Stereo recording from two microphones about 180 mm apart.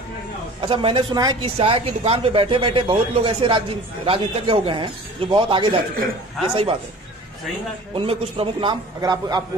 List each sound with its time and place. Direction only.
0.6 s speech: 30° right (ahead or behind)
7.9 s speech: 30° right (ahead or behind)